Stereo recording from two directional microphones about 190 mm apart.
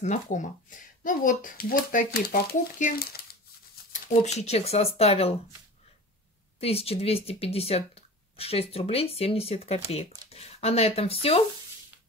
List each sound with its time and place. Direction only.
0.0 s a child's voice: 40° left (ahead or behind)
3.9 s speech: 40° left (ahead or behind)
6.6 s speech: 30° left (ahead or behind)